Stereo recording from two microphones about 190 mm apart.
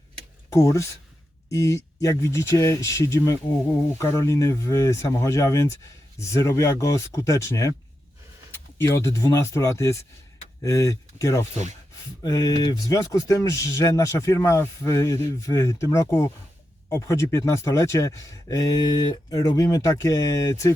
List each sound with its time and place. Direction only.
0.5 s speech: 15° left (ahead or behind)